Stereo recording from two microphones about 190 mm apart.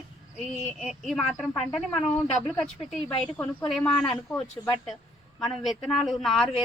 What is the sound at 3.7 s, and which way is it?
Speech, centre (ahead or behind).